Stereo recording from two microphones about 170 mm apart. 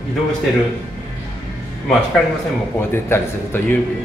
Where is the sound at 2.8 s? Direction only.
15° left (ahead or behind).